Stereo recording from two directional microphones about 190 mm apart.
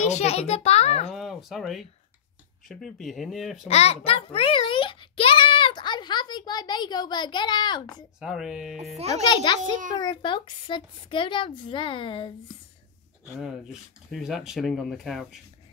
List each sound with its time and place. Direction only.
0.0 s a child's voice: 35° left (ahead or behind)
1.1 s speech: centre (ahead or behind)
3.6 s a child's voice: 35° left (ahead or behind)
8.2 s speech: 5° right (ahead or behind)
9.1 s a woman's voice: 25° left (ahead or behind)
9.6 s a child's voice: 45° right (ahead or behind)
9.9 s a woman's voice: 25° left (ahead or behind)
13.2 s speech: centre (ahead or behind)